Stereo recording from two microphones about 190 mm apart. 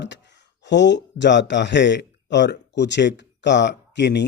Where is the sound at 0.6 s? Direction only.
65° left (ahead or behind).